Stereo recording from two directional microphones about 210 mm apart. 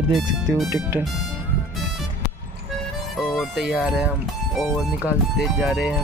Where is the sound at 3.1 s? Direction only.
Centre (ahead or behind).